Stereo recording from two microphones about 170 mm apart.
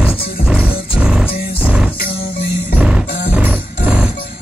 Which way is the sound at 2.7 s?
5° right (ahead or behind).